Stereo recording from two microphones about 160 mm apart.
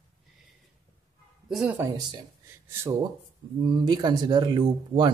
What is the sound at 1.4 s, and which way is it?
Speech, centre (ahead or behind).